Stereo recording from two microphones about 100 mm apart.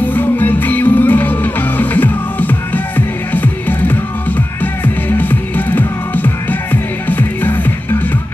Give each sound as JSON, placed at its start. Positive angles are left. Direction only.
{"t": 0.0, "sound": "music", "side_deg": 20}